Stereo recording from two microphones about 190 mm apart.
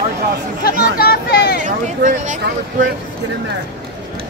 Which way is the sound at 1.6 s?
40° right (ahead or behind).